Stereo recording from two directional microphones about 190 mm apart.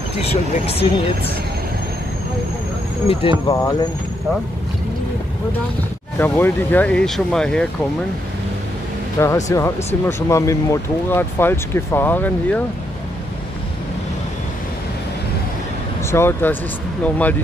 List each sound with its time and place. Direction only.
0.2 s speech: 30° left (ahead or behind)
3.1 s speech: 30° left (ahead or behind)
3.4 s speech: 15° left (ahead or behind)
6.1 s speech: 10° left (ahead or behind)
9.2 s speech: 15° left (ahead or behind)
16.1 s speech: 15° left (ahead or behind)